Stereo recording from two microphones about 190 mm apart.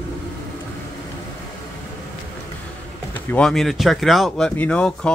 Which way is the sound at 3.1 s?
5° left (ahead or behind).